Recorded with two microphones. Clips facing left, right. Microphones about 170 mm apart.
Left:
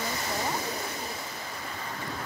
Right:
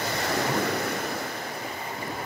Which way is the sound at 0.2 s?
70° right (ahead or behind).